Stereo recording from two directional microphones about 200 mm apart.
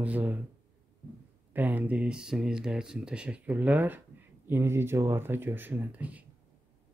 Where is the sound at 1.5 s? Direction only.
10° right (ahead or behind).